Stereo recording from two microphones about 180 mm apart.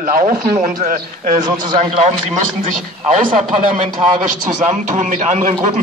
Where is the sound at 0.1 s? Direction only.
40° right (ahead or behind).